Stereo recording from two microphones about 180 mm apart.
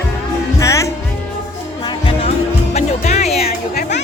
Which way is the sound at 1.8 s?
30° left (ahead or behind).